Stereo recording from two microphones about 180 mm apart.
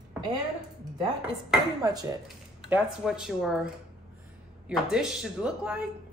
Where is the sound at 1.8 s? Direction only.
20° right (ahead or behind).